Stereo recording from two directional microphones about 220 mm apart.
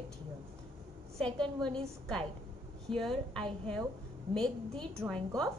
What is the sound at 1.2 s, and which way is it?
Speech, 5° left (ahead or behind).